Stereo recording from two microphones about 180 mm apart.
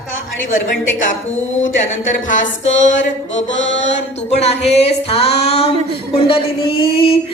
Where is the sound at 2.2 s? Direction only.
45° left (ahead or behind).